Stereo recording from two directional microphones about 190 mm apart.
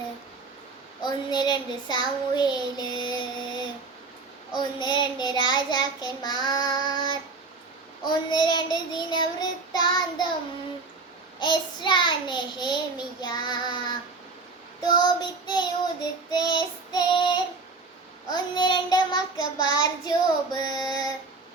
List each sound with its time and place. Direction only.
1.0 s child singing: 25° left (ahead or behind)
11.3 s child singing: 25° left (ahead or behind)